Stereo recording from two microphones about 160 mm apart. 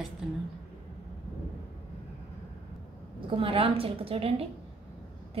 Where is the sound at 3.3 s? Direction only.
35° right (ahead or behind).